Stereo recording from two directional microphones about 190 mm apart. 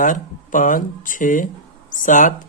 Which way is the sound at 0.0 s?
45° left (ahead or behind).